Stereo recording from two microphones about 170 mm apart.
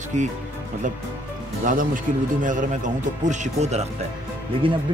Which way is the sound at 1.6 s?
50° right (ahead or behind).